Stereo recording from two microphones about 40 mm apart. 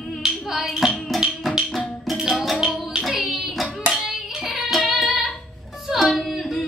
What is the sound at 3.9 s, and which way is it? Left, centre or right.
Music, centre.